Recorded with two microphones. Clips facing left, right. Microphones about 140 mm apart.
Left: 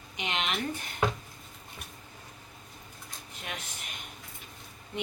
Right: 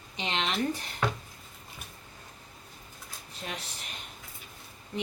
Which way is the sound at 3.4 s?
35° right (ahead or behind).